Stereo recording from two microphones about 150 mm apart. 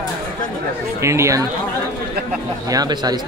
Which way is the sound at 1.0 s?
20° right (ahead or behind).